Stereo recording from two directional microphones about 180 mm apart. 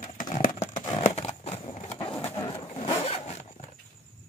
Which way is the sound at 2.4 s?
20° left (ahead or behind).